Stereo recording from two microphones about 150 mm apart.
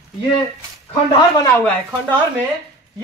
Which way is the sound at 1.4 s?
15° left (ahead or behind).